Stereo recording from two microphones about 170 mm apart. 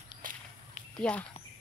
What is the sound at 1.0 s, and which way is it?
Speech, 5° left (ahead or behind).